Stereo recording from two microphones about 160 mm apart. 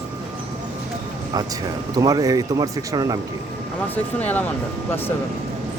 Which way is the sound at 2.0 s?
20° right (ahead or behind).